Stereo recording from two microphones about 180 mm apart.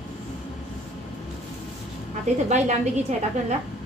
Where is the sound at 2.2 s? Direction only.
40° right (ahead or behind).